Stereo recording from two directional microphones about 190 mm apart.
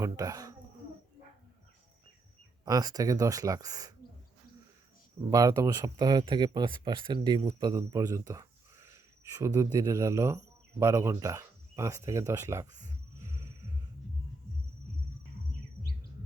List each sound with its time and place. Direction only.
0.0 s speech: 20° right (ahead or behind)
2.6 s speech: 20° right (ahead or behind)
5.3 s speech: 20° right (ahead or behind)
13.1 s music: 15° right (ahead or behind)